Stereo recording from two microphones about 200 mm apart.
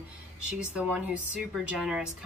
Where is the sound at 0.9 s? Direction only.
5° right (ahead or behind).